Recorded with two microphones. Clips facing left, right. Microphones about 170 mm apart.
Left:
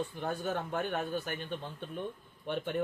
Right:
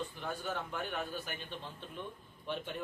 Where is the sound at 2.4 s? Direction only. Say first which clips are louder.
Left 5 dB; 55° left (ahead or behind).